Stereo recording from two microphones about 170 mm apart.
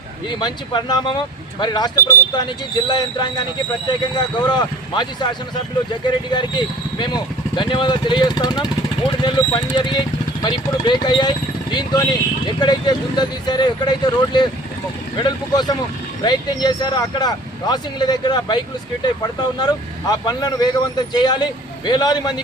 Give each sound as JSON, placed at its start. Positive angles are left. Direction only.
{"t": 0.3, "sound": "speech", "side_deg": 25}
{"t": 6.3, "sound": "speech", "side_deg": 25}